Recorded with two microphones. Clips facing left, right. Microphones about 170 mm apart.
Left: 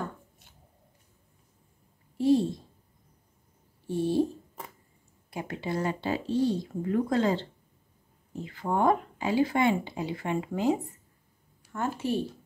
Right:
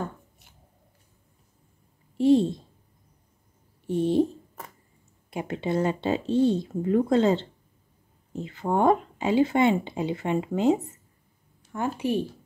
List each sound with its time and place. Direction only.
2.1 s speech: 25° right (ahead or behind)
3.8 s speech: 20° right (ahead or behind)
5.3 s speech: 25° right (ahead or behind)